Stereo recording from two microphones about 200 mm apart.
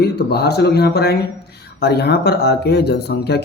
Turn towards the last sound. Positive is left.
turn(degrees=55)  # may be behind; listen again after turning